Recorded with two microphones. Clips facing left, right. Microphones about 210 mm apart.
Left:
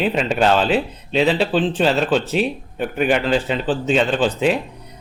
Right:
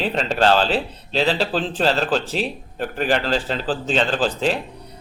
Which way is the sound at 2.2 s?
35° right (ahead or behind).